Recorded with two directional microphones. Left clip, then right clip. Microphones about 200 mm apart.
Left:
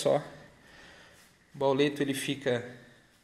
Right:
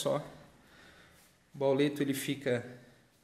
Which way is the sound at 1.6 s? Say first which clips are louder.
Left 3 dB; 15° right (ahead or behind).